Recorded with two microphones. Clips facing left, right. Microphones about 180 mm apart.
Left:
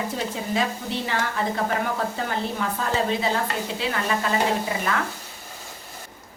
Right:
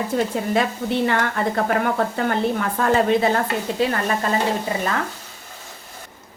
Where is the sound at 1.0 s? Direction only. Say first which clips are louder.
Right 3 dB; 60° right (ahead or behind).